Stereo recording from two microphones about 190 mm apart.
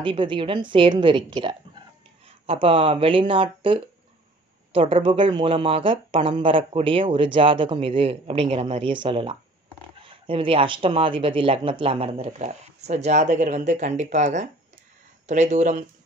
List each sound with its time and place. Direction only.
0.0 s speech: 25° right (ahead or behind)